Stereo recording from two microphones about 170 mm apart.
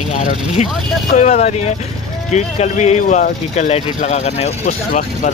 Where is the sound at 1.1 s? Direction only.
40° left (ahead or behind).